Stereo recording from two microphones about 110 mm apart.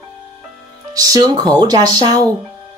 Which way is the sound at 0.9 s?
35° right (ahead or behind).